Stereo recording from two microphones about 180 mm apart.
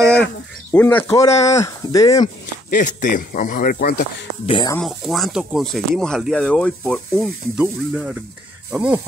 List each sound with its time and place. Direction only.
0.7 s speech: 10° left (ahead or behind)
2.7 s speech: 45° left (ahead or behind)
4.5 s speech: 25° left (ahead or behind)
4.7 s speech: centre (ahead or behind)